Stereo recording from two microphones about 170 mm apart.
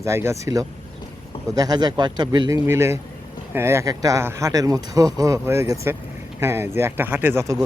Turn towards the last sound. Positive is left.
turn(degrees=-15)  # may be behind; listen again after turning